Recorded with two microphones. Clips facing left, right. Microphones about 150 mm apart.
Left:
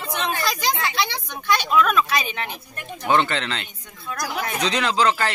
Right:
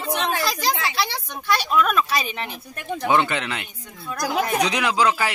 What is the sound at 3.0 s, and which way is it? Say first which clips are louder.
Speech: even; 15° right (ahead or behind).